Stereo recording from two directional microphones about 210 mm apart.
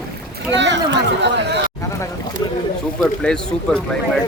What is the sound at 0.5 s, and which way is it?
Speech, 60° right (ahead or behind).